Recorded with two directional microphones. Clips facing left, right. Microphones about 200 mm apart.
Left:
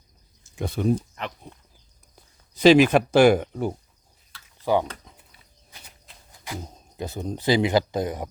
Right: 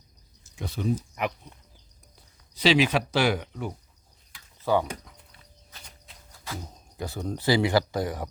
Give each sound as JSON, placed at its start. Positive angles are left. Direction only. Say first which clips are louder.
{"t": 0.5, "sound": "speech", "louder": "left 5 dB", "side_deg": 55}
{"t": 0.9, "sound": "speech", "louder": "right 2 dB", "side_deg": -10}
{"t": 2.6, "sound": "speech", "louder": "left 7 dB", "side_deg": 50}
{"t": 4.6, "sound": "speech", "louder": "left 2 dB", "side_deg": 15}
{"t": 6.3, "sound": "speech", "louder": "left 2 dB", "side_deg": 15}